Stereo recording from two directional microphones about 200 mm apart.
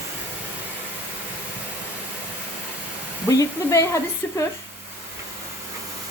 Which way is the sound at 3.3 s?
15° left (ahead or behind).